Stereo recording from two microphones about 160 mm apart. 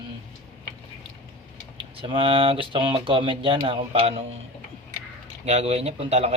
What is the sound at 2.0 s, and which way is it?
Speech, 30° right (ahead or behind).